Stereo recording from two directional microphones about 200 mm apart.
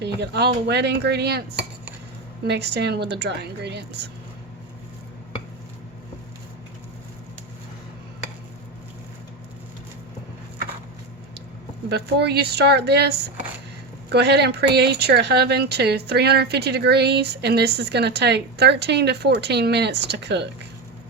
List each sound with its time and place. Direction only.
0.0 s speech: 55° right (ahead or behind)
2.5 s speech: 55° right (ahead or behind)
11.9 s speech: 55° right (ahead or behind)